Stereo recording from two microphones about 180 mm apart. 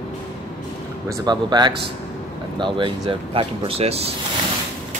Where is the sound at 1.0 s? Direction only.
25° right (ahead or behind).